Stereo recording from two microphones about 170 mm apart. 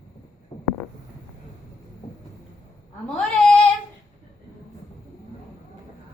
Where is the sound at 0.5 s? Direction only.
20° left (ahead or behind).